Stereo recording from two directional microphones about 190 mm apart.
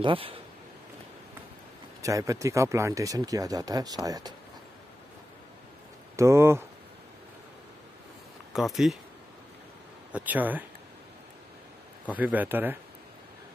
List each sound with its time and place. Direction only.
0.0 s speech: 30° right (ahead or behind)
2.0 s speech: 15° right (ahead or behind)
6.1 s speech: 15° right (ahead or behind)
8.5 s speech: centre (ahead or behind)
10.1 s speech: 10° right (ahead or behind)
12.2 s speech: 10° right (ahead or behind)